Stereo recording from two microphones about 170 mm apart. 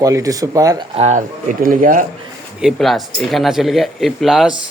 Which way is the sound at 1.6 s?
55° right (ahead or behind).